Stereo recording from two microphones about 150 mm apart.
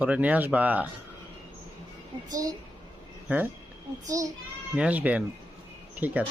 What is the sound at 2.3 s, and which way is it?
Speech, 25° right (ahead or behind).